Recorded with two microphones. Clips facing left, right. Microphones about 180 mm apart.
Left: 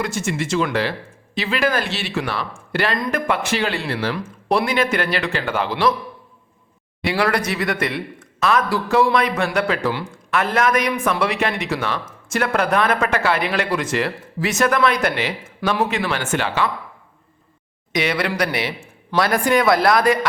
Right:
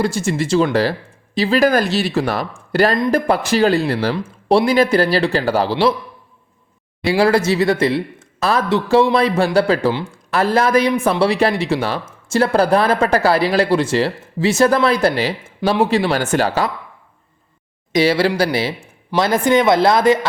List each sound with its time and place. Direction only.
0.0 s speech: 35° right (ahead or behind)
7.0 s speech: 30° right (ahead or behind)
17.9 s a man's voice: 30° right (ahead or behind)